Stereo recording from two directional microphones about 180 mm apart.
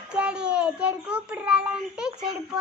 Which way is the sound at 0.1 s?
5° right (ahead or behind).